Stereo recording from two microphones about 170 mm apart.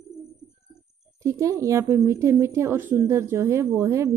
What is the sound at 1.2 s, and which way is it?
Speech, 20° right (ahead or behind).